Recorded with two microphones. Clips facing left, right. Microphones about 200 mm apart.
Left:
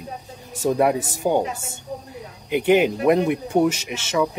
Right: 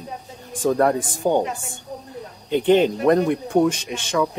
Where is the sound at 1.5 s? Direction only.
40° left (ahead or behind).